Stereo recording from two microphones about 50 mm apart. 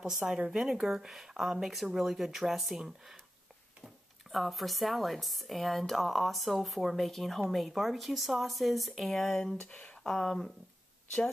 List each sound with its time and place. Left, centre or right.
0.0 s speech: centre
4.3 s speech: centre
9.7 s speech: left
10.0 s speech: centre